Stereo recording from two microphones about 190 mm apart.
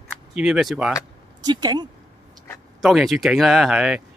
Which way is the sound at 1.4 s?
20° right (ahead or behind).